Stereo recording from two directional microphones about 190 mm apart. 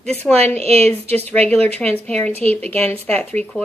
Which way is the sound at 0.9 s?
10° left (ahead or behind).